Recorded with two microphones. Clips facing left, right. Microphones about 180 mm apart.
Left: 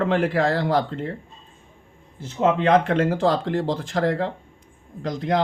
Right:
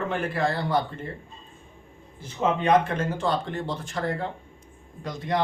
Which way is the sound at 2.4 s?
80° left.